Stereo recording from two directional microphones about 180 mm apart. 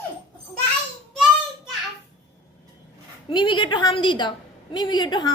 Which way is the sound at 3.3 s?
25° left (ahead or behind).